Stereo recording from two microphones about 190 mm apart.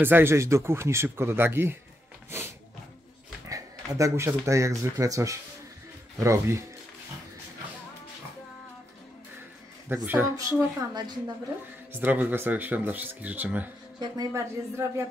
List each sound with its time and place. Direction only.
0.0 s speech: 10° right (ahead or behind)
2.3 s music: 15° right (ahead or behind)
3.4 s speech: 15° right (ahead or behind)
9.8 s speech: 10° right (ahead or behind)
11.9 s speech: 10° right (ahead or behind)
13.9 s speech: 20° right (ahead or behind)